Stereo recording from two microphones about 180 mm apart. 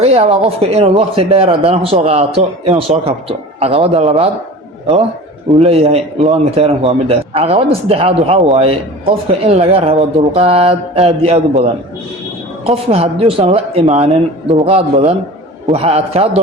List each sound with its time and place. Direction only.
0.0 s a man's voice: 35° right (ahead or behind)
5.6 s a man's voice: 35° right (ahead or behind)